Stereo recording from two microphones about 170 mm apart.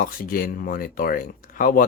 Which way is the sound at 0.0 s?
55° left (ahead or behind).